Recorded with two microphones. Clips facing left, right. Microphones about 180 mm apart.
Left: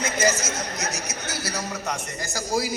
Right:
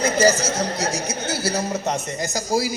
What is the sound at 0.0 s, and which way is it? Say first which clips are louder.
A man's voice: right 6 dB; 35° right (ahead or behind).